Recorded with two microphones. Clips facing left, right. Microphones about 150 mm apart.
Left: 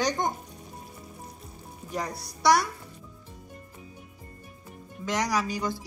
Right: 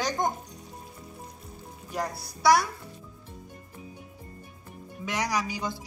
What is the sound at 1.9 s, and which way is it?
Speech, 5° right (ahead or behind).